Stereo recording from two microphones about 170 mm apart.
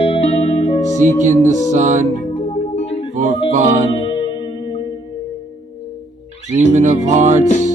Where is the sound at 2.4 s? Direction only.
45° left (ahead or behind).